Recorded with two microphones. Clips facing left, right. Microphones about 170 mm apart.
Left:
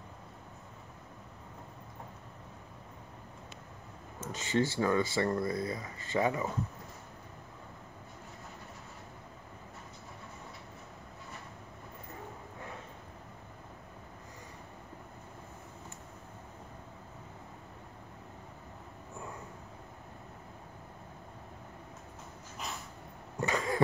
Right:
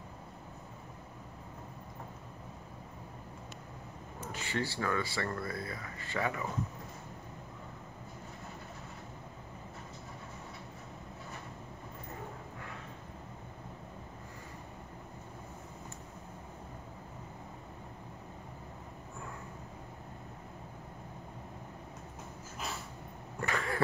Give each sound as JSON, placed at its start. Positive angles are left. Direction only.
{"t": 4.3, "sound": "speech", "side_deg": 20}
{"t": 23.4, "sound": "cough", "side_deg": 15}